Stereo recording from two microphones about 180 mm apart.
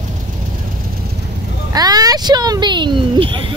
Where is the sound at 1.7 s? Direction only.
20° right (ahead or behind).